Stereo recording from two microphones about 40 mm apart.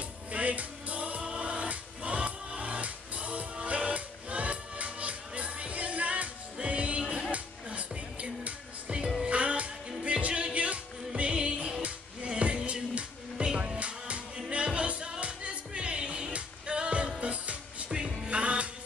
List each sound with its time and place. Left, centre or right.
0.3 s music: right
7.2 s music: right
17.8 s music: right